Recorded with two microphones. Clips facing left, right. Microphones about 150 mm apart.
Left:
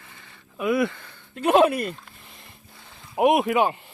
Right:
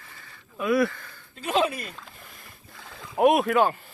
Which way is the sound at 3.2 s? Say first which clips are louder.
Even; 20° left (ahead or behind).